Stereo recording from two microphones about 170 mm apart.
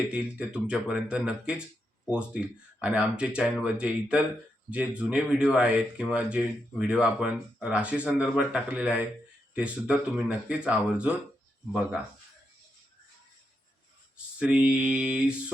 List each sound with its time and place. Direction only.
0.1 s speech: 5° right (ahead or behind)
14.3 s speech: 5° right (ahead or behind)